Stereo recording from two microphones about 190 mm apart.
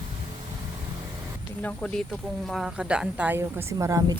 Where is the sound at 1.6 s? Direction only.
5° left (ahead or behind).